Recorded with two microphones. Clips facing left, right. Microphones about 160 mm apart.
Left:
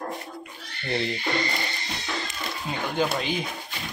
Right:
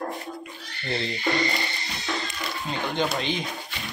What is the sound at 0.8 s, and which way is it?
Speech, 15° left (ahead or behind).